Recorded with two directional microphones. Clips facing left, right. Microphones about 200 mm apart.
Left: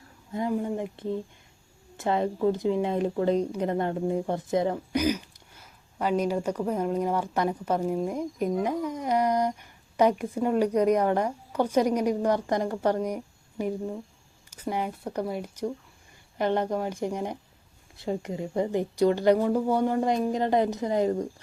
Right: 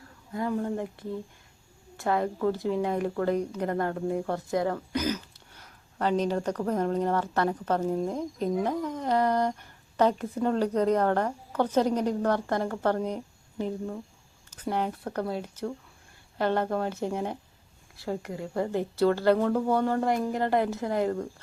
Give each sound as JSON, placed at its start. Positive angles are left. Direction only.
{"t": 0.3, "sound": "speech", "side_deg": 15}